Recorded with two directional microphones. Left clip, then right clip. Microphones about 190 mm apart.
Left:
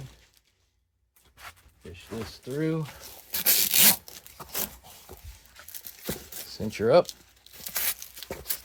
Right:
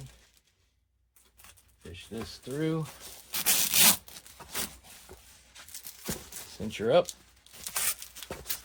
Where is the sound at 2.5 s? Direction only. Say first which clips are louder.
Left 2 dB; 30° left (ahead or behind).